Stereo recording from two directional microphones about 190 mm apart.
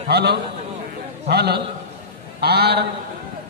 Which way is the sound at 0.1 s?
60° right (ahead or behind).